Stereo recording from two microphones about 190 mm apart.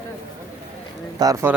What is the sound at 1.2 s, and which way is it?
Speech, 20° right (ahead or behind).